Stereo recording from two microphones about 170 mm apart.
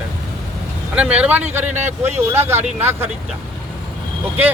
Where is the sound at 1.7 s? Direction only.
40° right (ahead or behind).